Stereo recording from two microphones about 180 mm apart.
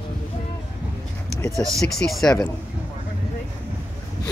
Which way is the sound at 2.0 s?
Centre (ahead or behind).